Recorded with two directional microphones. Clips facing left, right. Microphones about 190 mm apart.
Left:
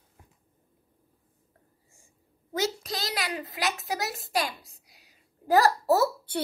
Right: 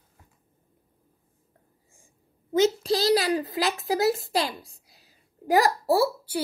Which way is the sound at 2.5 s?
25° right (ahead or behind).